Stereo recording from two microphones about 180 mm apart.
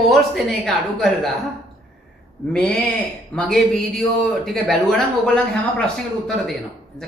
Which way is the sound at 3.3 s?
5° left (ahead or behind).